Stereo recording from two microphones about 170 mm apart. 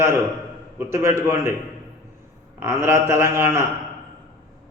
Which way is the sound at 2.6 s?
15° right (ahead or behind).